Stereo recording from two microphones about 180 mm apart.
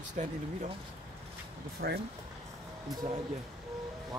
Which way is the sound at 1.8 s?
55° right (ahead or behind).